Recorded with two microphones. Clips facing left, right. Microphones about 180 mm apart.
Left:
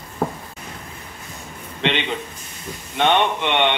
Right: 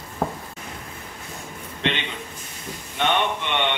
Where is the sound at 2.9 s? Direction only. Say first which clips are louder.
Left 5 dB; 75° left (ahead or behind).